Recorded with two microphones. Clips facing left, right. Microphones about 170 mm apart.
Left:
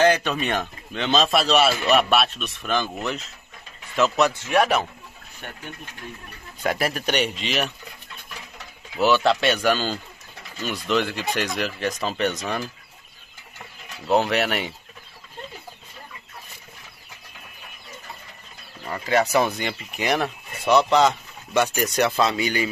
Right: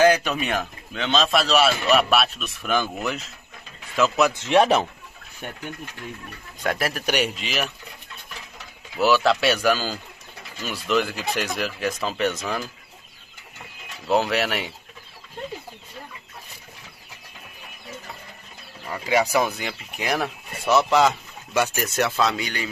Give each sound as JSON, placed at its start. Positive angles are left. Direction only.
{"t": 0.0, "sound": "speech", "side_deg": -10}
{"t": 4.4, "sound": "speech", "side_deg": -25}
{"t": 6.6, "sound": "speech", "side_deg": 0}
{"t": 9.0, "sound": "speech", "side_deg": 0}
{"t": 14.0, "sound": "speech", "side_deg": 0}
{"t": 18.9, "sound": "speech", "side_deg": -10}